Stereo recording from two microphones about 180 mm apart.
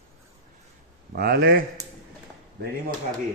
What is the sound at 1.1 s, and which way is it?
Speech, 60° right (ahead or behind).